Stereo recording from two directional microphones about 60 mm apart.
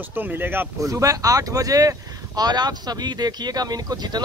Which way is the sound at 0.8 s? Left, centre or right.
Right.